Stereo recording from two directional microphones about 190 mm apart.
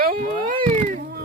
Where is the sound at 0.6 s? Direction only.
35° right (ahead or behind).